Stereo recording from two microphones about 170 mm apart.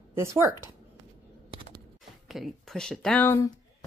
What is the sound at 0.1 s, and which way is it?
Speech, 15° right (ahead or behind).